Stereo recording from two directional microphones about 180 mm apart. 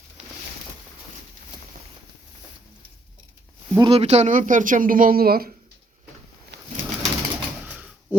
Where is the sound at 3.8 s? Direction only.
35° right (ahead or behind); by 5.5 s 55° right (ahead or behind).